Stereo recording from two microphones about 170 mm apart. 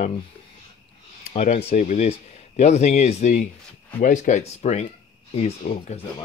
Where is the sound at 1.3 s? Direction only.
40° left (ahead or behind).